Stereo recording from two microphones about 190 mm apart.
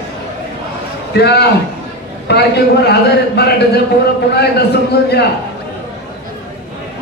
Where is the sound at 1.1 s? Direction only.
60° left (ahead or behind).